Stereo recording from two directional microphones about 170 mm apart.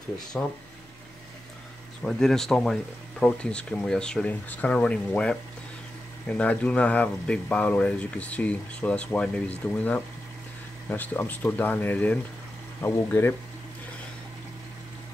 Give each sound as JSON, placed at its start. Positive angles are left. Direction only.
{"t": 0.3, "sound": "speech", "side_deg": 5}
{"t": 2.0, "sound": "speech", "side_deg": 0}